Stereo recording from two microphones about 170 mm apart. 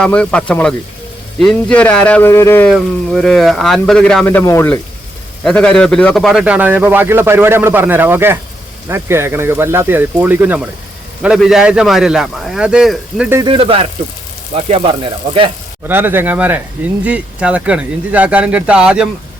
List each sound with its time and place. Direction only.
0.0 s a man's voice: 5° left (ahead or behind)
13.4 s speech: 30° right (ahead or behind)
15.9 s a man's voice: 10° right (ahead or behind)